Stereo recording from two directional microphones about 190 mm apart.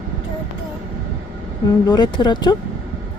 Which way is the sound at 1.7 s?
20° left (ahead or behind).